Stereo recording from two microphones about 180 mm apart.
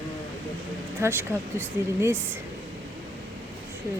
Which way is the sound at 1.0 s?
15° right (ahead or behind).